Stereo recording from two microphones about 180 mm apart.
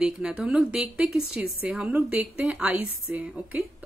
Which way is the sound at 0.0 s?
5° right (ahead or behind).